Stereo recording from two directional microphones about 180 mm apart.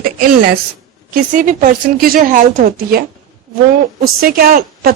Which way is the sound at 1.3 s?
45° right (ahead or behind).